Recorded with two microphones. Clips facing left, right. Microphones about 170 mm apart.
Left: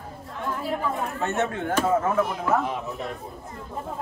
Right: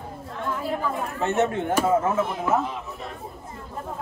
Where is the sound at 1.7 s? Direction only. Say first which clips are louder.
Left 2 dB; 10° right (ahead or behind).